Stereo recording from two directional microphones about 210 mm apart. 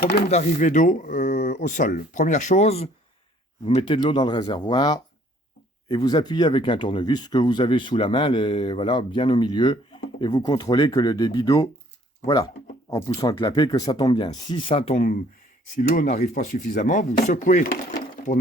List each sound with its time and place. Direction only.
0.0 s speech: 50° left (ahead or behind)
0.3 s speech: 35° left (ahead or behind)